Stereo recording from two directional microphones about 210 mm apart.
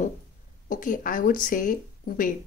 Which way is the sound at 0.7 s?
40° left (ahead or behind).